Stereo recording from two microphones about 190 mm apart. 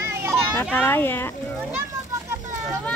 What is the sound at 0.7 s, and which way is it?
Speech, 10° left (ahead or behind).